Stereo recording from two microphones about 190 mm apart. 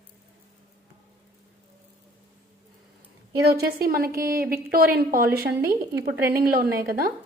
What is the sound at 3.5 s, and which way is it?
A woman's voice, 50° right (ahead or behind).